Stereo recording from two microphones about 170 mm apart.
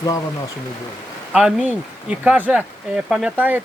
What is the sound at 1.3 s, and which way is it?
Speech, 5° right (ahead or behind).